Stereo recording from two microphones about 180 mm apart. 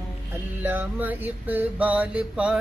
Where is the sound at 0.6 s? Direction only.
10° right (ahead or behind).